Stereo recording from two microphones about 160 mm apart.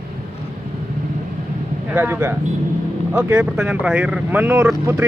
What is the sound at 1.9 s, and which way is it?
A man's voice, 10° right (ahead or behind).